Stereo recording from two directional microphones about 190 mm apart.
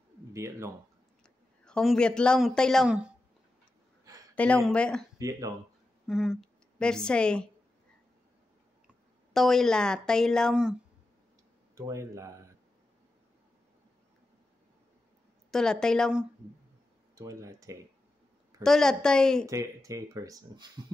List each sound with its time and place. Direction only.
0.3 s speech: 15° right (ahead or behind)
1.2 s speech: 5° left (ahead or behind)
4.4 s a woman's voice: 5° left (ahead or behind)
6.0 s a woman's voice: centre (ahead or behind)
8.8 s a woman's voice: centre (ahead or behind)
11.7 s speech: 15° right (ahead or behind)
15.5 s a woman's voice: 5° left (ahead or behind)
17.1 s speech: 15° right (ahead or behind)
18.6 s a woman's voice: centre (ahead or behind)
19.4 s speech: 15° right (ahead or behind)